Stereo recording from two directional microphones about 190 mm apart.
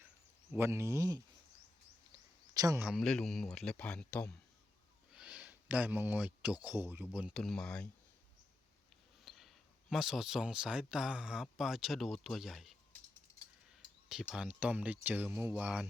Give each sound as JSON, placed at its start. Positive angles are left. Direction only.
{"t": 0.5, "sound": "speech", "side_deg": -15}
{"t": 2.1, "sound": "a sound", "side_deg": -20}
{"t": 2.8, "sound": "speech", "side_deg": 0}
{"t": 5.1, "sound": "speech", "side_deg": -5}
{"t": 9.2, "sound": "a sound", "side_deg": 0}
{"t": 9.9, "sound": "speech", "side_deg": 0}
{"t": 14.3, "sound": "speech", "side_deg": -5}